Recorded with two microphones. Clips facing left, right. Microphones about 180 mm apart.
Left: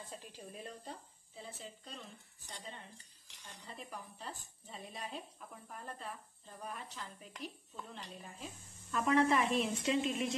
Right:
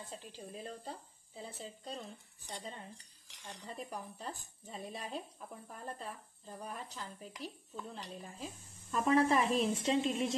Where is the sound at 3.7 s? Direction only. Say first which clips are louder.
Right 4 dB; 40° right (ahead or behind).